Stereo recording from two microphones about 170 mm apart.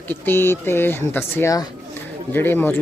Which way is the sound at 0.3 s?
15° left (ahead or behind).